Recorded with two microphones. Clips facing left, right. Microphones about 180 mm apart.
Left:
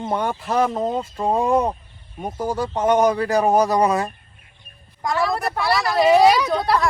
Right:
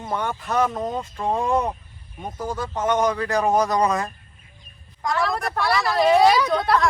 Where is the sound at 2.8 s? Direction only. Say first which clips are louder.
Left 4 dB; 10° left (ahead or behind).